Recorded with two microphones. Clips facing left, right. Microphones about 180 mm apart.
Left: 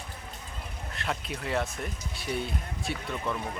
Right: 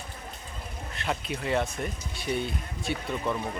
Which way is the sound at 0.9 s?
Centre (ahead or behind).